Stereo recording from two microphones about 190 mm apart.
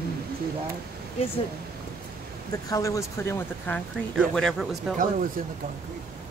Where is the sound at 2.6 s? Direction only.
15° left (ahead or behind).